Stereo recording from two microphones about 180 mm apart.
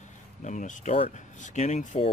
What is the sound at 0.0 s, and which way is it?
Speech, 45° left (ahead or behind).